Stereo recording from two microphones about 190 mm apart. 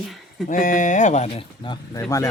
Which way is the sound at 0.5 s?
45° left (ahead or behind).